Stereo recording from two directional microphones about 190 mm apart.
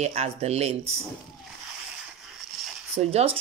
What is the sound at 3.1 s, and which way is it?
Speech, 30° right (ahead or behind).